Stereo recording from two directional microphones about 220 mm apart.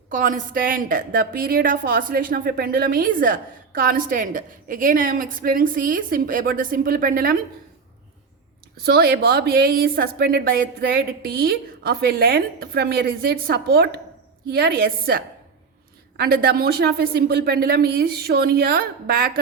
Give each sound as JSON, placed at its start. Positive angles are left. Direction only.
{"t": 0.1, "sound": "a woman's voice", "side_deg": -35}
{"t": 8.8, "sound": "a woman's voice", "side_deg": -45}